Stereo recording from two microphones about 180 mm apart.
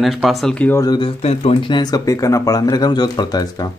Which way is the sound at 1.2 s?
35° left (ahead or behind).